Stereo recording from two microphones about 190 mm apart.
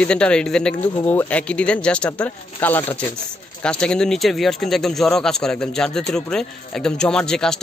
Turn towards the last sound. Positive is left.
turn(degrees=5)  # may be behind; listen again after turning